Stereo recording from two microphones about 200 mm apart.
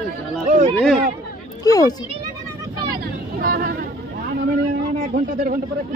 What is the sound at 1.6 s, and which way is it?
Speech, 20° left (ahead or behind).